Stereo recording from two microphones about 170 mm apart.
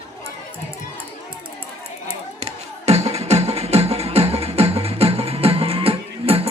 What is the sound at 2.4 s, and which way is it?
Music, 40° right (ahead or behind).